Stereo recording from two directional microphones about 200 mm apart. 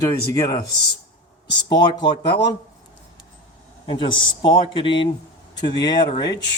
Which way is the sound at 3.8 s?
25° left (ahead or behind).